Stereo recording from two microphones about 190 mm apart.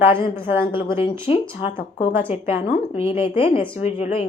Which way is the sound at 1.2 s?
30° left (ahead or behind).